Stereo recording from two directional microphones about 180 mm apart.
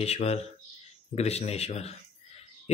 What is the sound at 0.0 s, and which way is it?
Speech, 35° left (ahead or behind).